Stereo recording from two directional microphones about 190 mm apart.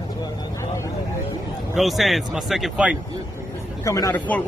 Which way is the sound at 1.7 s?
Centre (ahead or behind).